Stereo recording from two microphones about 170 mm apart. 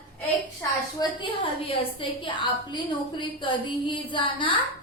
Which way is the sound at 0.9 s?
30° left (ahead or behind).